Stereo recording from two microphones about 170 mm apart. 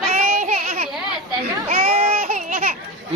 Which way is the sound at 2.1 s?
55° right (ahead or behind).